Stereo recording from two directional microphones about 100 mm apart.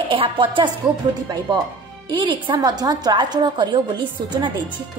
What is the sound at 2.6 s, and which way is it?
A woman's voice, 40° right (ahead or behind).